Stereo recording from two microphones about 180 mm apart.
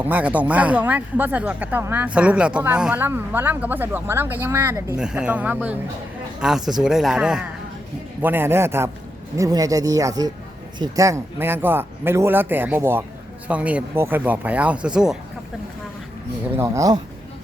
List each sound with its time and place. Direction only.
0.0 s speech: 10° right (ahead or behind)
16.6 s speech: 15° right (ahead or behind)